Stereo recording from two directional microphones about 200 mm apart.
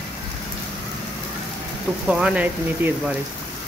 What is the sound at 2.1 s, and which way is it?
Speech, 5° right (ahead or behind).